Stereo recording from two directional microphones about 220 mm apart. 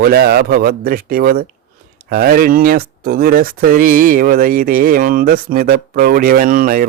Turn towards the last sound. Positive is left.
turn(degrees=-40)  # may be behind; listen again after turning